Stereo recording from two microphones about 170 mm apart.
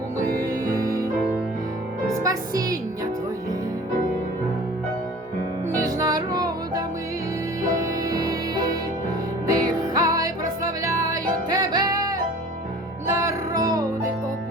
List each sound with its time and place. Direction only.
0.3 s music: 20° right (ahead or behind)
2.2 s a woman's voice: 20° right (ahead or behind)
5.8 s music: 20° right (ahead or behind)
8.1 s music: 20° right (ahead or behind)